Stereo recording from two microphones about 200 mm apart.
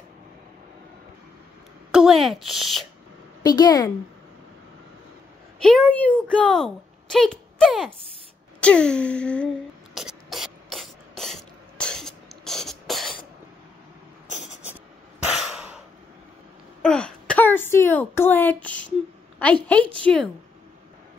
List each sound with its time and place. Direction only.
1.9 s speech: centre (ahead or behind)
3.4 s a woman's voice: 20° left (ahead or behind)
5.6 s speech: 5° left (ahead or behind)
9.9 s spray: centre (ahead or behind)
14.4 s a sound: centre (ahead or behind)
16.8 s a sound: 5° left (ahead or behind)
19.4 s a woman's voice: 5° left (ahead or behind)